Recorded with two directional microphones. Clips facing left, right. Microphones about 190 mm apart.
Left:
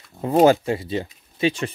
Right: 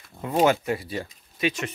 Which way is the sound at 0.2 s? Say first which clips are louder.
Left 6 dB; 35° left (ahead or behind).